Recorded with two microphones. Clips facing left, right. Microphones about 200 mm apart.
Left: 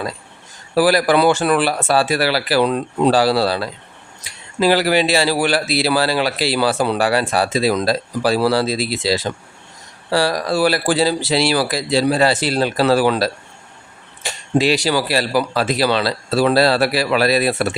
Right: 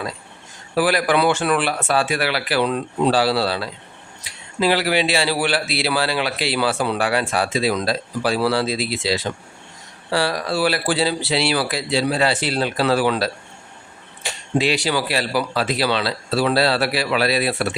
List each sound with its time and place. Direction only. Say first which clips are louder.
0.8 s a man's voice: left 4 dB; 40° left (ahead or behind)
14.6 s a man's voice: left 3 dB; 40° left (ahead or behind)